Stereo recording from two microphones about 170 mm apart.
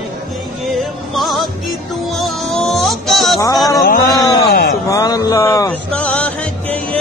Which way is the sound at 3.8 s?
60° left (ahead or behind).